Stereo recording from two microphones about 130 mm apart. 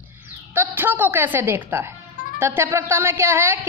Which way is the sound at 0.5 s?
15° right (ahead or behind).